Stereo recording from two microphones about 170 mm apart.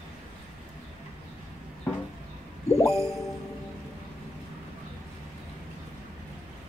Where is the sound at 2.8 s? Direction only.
Centre (ahead or behind).